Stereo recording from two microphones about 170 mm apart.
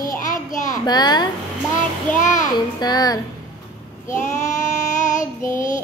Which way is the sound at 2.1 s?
50° left (ahead or behind).